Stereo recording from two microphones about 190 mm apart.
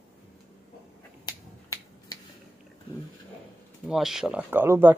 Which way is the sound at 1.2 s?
20° left (ahead or behind).